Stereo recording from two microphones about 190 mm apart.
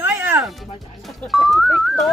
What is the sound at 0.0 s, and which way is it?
Music, 10° right (ahead or behind).